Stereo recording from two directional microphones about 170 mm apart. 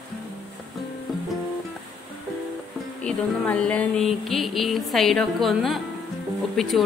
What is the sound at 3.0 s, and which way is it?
Music, 5° left (ahead or behind).